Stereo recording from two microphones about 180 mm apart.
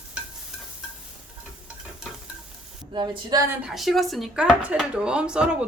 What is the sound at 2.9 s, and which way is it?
Speech, 25° right (ahead or behind).